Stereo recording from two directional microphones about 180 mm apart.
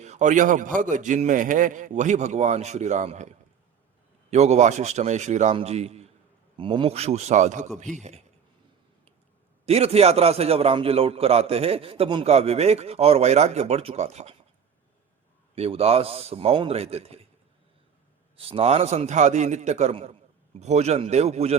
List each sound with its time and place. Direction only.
0.0 s a man's voice: 40° right (ahead or behind)
9.6 s a man's voice: 35° right (ahead or behind)
15.5 s a man's voice: 35° right (ahead or behind)
18.3 s a man's voice: 30° right (ahead or behind)